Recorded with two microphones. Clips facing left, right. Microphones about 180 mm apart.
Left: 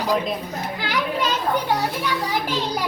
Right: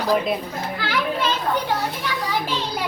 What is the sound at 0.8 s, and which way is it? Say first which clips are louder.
Children playing: even; 15° left (ahead or behind).